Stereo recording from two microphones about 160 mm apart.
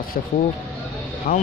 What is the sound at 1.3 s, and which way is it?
Speech, 60° left (ahead or behind).